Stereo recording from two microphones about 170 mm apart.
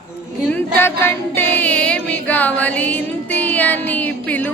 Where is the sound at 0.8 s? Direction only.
15° left (ahead or behind).